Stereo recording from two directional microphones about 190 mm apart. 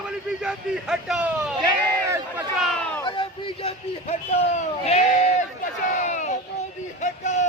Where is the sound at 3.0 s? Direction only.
25° left (ahead or behind).